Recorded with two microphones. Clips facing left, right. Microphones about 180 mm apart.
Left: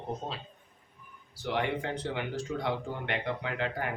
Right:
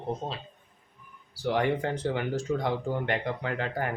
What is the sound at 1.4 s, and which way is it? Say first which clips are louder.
Speech: right 5 dB; 45° right (ahead or behind).